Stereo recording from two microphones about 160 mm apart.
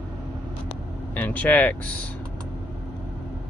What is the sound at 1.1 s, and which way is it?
Speech, 10° left (ahead or behind).